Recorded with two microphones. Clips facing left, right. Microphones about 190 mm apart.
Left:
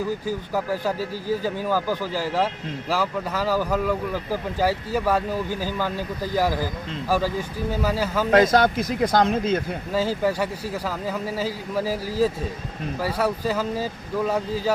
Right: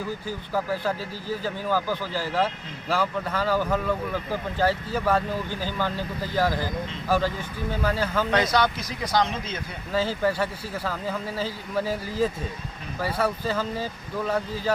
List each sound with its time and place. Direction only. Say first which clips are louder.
0.5 s speech: even; 10° left (ahead or behind)
8.3 s speech: left 8 dB; 45° left (ahead or behind)
9.9 s speech: left 1 dB; 10° left (ahead or behind)